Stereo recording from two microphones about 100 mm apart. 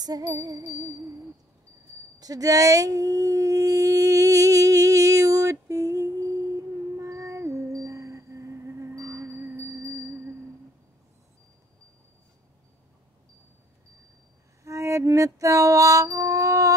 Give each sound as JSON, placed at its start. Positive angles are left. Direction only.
{"t": 0.0, "sound": "music", "side_deg": -40}
{"t": 2.1, "sound": "humming", "side_deg": -35}
{"t": 14.6, "sound": "music", "side_deg": -30}